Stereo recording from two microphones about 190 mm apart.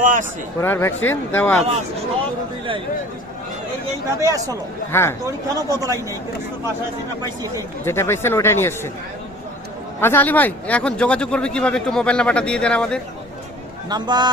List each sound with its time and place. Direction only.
0.0 s speech: 45° right (ahead or behind)
0.6 s speech: 10° left (ahead or behind)
4.2 s a man's voice: 15° right (ahead or behind)
4.9 s speech: 15° left (ahead or behind)
5.5 s a man's voice: 20° right (ahead or behind)
7.9 s speech: 15° left (ahead or behind)
10.0 s a man's voice: 10° left (ahead or behind)
13.9 s speech: 20° right (ahead or behind)